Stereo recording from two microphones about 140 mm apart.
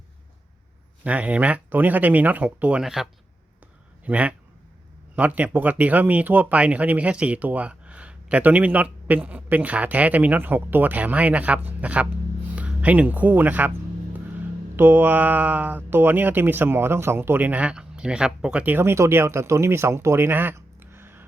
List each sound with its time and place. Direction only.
1.0 s speech: 10° right (ahead or behind)
14.8 s speech: 15° right (ahead or behind)